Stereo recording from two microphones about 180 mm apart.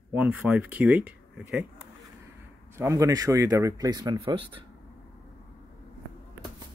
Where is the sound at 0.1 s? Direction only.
10° right (ahead or behind).